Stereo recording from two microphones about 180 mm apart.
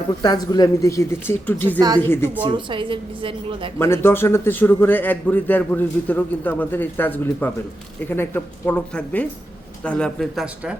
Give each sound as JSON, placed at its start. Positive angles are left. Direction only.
{"t": 0.2, "sound": "a man's voice", "side_deg": 20}
{"t": 2.4, "sound": "a woman's voice", "side_deg": -25}
{"t": 3.8, "sound": "a man's voice", "side_deg": 15}